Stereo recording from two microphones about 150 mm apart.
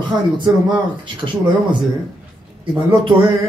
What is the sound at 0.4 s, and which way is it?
Speech, 30° right (ahead or behind).